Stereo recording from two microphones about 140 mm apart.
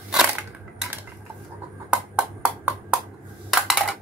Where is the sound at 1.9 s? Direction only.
10° right (ahead or behind).